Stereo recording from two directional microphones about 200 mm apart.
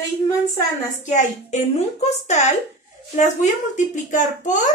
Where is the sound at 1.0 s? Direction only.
35° left (ahead or behind).